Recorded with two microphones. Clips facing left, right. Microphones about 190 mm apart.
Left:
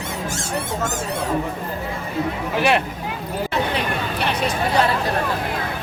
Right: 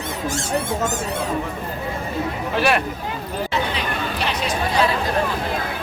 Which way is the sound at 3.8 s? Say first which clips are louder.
Left 1 dB; 60° left (ahead or behind).